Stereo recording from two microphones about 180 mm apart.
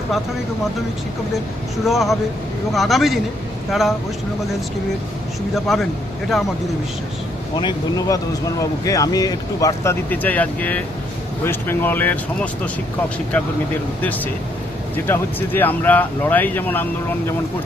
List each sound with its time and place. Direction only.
1.8 s speech: centre (ahead or behind)
5.5 s speech: centre (ahead or behind)
7.5 s speech: 20° left (ahead or behind)
14.9 s speech: 10° left (ahead or behind)